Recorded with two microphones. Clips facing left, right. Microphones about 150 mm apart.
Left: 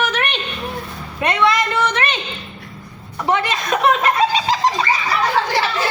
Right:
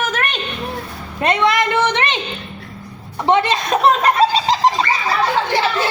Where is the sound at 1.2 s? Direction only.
25° right (ahead or behind).